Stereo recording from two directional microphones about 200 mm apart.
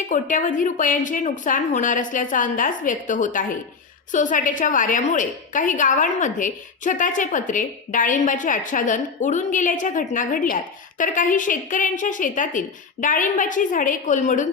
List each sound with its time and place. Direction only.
0.1 s a woman's voice: 40° left (ahead or behind)